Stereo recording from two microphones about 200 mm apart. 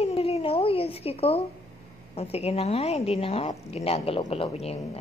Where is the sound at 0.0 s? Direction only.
30° left (ahead or behind).